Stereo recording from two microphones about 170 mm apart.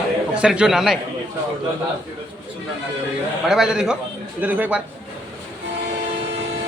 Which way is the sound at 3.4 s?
Centre (ahead or behind).